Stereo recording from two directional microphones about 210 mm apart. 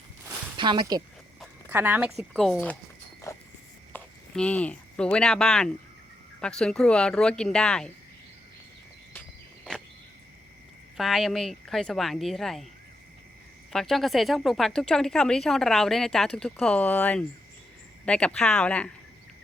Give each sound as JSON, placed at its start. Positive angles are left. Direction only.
{"t": 0.5, "sound": "speech", "side_deg": -20}
{"t": 1.7, "sound": "speech", "side_deg": -10}
{"t": 3.2, "sound": "a sound", "side_deg": 15}
{"t": 3.9, "sound": "speech", "side_deg": 5}
{"t": 9.7, "sound": "a sound", "side_deg": 5}
{"t": 10.9, "sound": "speech", "side_deg": 0}
{"t": 13.7, "sound": "speech", "side_deg": 0}